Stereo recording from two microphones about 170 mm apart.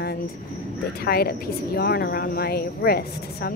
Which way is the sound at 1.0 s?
65° left (ahead or behind).